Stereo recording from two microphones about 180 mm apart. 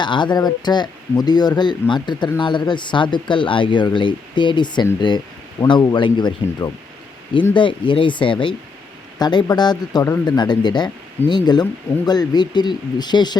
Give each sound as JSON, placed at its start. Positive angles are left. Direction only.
{"t": 0.0, "sound": "speech", "side_deg": 25}